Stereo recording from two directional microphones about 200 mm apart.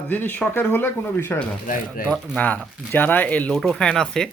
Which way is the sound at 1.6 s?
40° left (ahead or behind).